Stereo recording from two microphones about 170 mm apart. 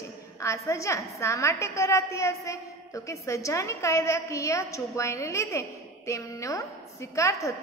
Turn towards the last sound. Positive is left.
turn(degrees=15)  # may be behind; listen again after turning